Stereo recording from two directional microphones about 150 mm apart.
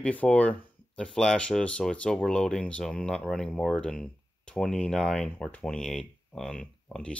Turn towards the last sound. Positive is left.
turn(degrees=5)  # may be behind; listen again after turning